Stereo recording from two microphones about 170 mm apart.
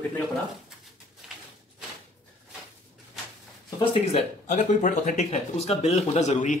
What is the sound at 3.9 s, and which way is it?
Speech, 40° left (ahead or behind).